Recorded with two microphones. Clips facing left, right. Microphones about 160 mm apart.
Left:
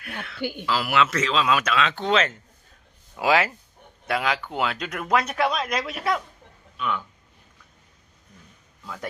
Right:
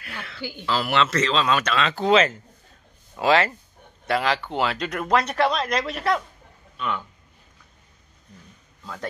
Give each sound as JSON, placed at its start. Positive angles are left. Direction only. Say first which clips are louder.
{"t": 0.0, "sound": "a sound", "louder": "left 1 dB", "side_deg": 0}
{"t": 0.4, "sound": "speech", "louder": "left 6 dB", "side_deg": 55}
{"t": 0.7, "sound": "speech", "louder": "right 1 dB", "side_deg": 5}